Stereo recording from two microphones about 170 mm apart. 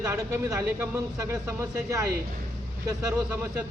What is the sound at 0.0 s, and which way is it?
Speech, 15° right (ahead or behind).